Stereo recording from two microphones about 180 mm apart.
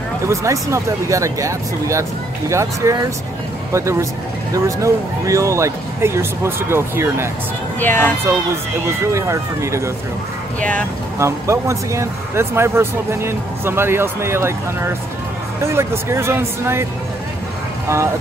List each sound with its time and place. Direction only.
0.3 s speech: 15° right (ahead or behind)
7.8 s speech: 10° left (ahead or behind)
9.0 s speech: 15° right (ahead or behind)
10.6 s speech: 5° left (ahead or behind)
11.1 s speech: 15° right (ahead or behind)
17.8 s speech: 15° right (ahead or behind)